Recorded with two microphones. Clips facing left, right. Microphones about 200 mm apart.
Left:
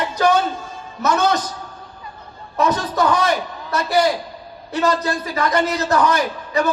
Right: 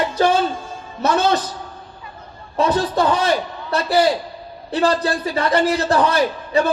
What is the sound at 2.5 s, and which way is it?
A man's voice, 30° right (ahead or behind).